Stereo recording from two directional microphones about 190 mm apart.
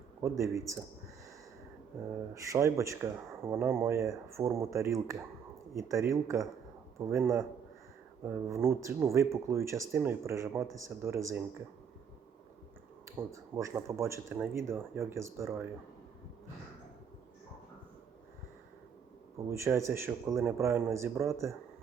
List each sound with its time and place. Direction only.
0.2 s speech: 15° right (ahead or behind)
2.3 s speech: 15° right (ahead or behind)
13.1 s speech: 15° right (ahead or behind)
19.4 s speech: 15° right (ahead or behind)